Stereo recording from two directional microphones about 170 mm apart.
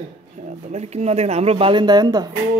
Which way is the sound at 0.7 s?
40° right (ahead or behind).